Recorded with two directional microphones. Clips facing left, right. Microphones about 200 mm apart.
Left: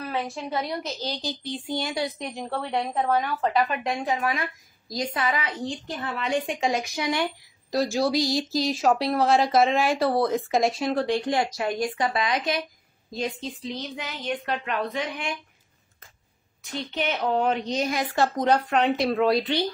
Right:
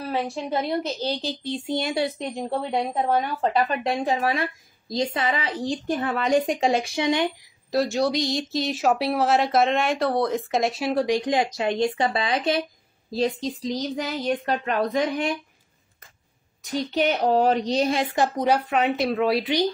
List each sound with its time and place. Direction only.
0.1 s speech: 30° right (ahead or behind)
5.9 s speech: 50° right (ahead or behind); by 7.2 s 25° right (ahead or behind)
7.7 s speech: centre (ahead or behind); by 15.3 s 40° right (ahead or behind)
16.6 s speech: 40° right (ahead or behind); by 19.6 s 10° right (ahead or behind)